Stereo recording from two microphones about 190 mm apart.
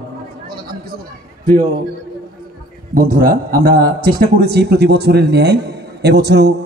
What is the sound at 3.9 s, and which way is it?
A man's voice, 50° right (ahead or behind).